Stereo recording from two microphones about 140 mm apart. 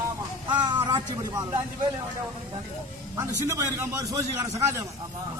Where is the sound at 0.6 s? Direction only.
35° right (ahead or behind).